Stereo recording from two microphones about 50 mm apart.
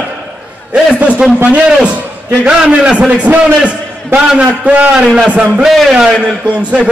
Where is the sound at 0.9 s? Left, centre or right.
Right.